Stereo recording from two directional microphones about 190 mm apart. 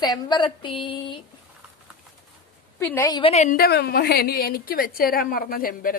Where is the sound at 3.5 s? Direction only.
55° left (ahead or behind).